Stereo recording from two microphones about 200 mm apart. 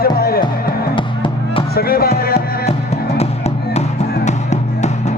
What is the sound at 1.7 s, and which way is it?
Music, 50° left (ahead or behind).